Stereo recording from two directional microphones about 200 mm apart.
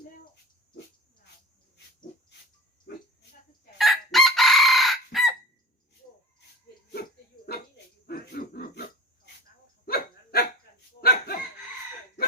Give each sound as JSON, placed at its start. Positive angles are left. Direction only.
{"t": 3.8, "sound": "chicken", "side_deg": 0}
{"t": 8.0, "sound": "pig", "side_deg": 50}
{"t": 9.8, "sound": "dog", "side_deg": 50}